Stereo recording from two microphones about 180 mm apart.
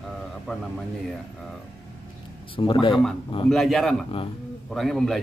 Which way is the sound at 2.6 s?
25° left (ahead or behind).